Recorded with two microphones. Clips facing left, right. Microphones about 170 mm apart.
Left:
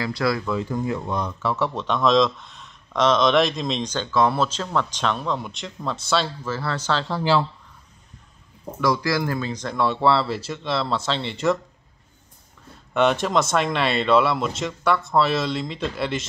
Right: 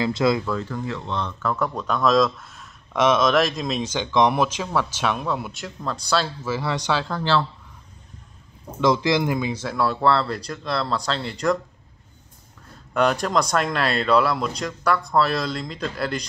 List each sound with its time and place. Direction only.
0.0 s speech: 20° right (ahead or behind)
0.7 s speech: 15° left (ahead or behind); by 6.8 s 10° right (ahead or behind)
7.1 s speech: 10° left (ahead or behind)
8.8 s speech: 20° right (ahead or behind); by 11.5 s centre (ahead or behind)
12.9 s speech: centre (ahead or behind)